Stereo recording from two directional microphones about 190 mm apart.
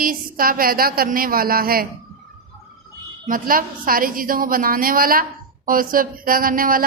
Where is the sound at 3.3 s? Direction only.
45° right (ahead or behind).